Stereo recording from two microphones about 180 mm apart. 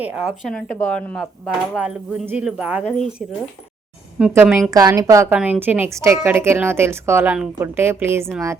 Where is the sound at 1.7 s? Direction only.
5° right (ahead or behind).